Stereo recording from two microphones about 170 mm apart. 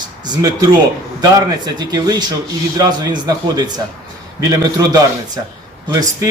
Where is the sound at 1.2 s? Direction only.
25° right (ahead or behind).